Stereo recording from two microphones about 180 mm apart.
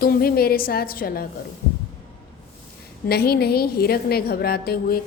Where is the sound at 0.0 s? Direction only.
55° left (ahead or behind).